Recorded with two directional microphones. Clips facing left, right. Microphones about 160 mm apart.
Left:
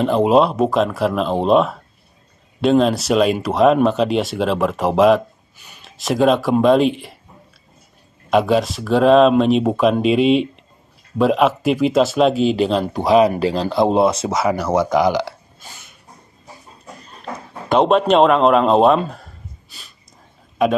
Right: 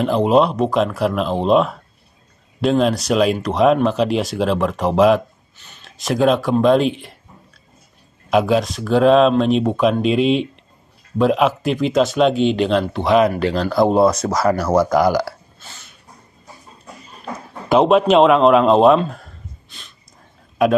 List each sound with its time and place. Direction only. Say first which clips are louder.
0.0 s speech: left 1 dB; centre (ahead or behind)
8.3 s speech: even; centre (ahead or behind)
13.4 s speech: right 1 dB; 30° left (ahead or behind)
14.4 s speech: right 2 dB; 5° left (ahead or behind)
14.9 s speech: right 1 dB; centre (ahead or behind)
15.1 s a sound: right 1 dB; 15° left (ahead or behind)
17.2 s speech: even; 5° right (ahead or behind)